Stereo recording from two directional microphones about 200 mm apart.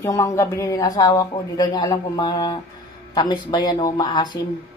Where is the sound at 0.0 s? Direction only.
15° left (ahead or behind).